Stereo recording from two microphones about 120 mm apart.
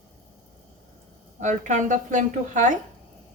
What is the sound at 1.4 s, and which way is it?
A woman's voice, 90° right.